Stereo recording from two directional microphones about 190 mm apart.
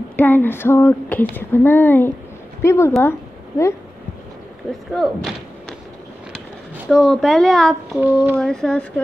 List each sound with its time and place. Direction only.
0.1 s a sound: 10° left (ahead or behind)
2.9 s speech: 10° left (ahead or behind)
4.9 s speech: centre (ahead or behind)
6.9 s speech: 5° left (ahead or behind)
8.0 s speech: 10° right (ahead or behind)
8.4 s speech: 5° left (ahead or behind)